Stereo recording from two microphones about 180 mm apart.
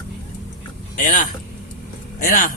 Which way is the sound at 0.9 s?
45° left (ahead or behind).